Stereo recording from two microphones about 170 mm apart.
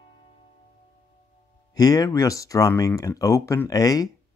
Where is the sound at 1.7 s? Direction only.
20° left (ahead or behind).